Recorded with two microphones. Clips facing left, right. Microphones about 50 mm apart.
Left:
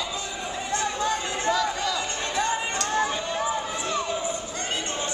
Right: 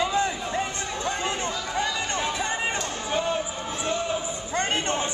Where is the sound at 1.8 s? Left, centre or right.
Right.